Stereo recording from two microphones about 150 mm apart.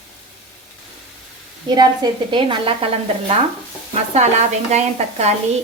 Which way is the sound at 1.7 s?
30° right (ahead or behind).